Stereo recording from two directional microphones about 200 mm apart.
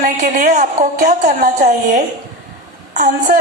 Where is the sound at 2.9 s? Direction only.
40° right (ahead or behind).